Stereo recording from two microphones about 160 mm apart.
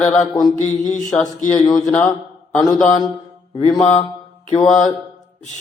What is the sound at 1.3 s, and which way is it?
Speech, 50° left (ahead or behind).